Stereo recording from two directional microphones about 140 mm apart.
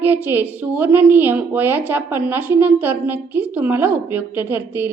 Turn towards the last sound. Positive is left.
turn(degrees=-15)  # may be behind; listen again after turning